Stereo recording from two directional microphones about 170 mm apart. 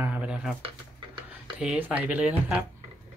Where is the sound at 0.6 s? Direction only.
30° right (ahead or behind).